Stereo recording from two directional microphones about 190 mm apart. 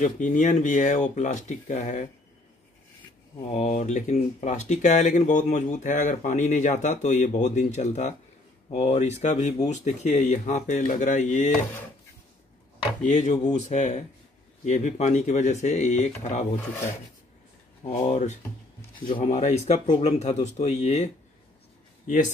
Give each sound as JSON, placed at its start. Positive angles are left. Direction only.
{"t": 0.0, "sound": "speech", "side_deg": 40}
{"t": 3.5, "sound": "speech", "side_deg": 35}
{"t": 13.0, "sound": "speech", "side_deg": 40}
{"t": 17.8, "sound": "speech", "side_deg": 35}